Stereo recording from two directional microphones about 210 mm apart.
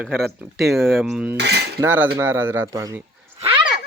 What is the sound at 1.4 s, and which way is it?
Cutlery, 50° right (ahead or behind).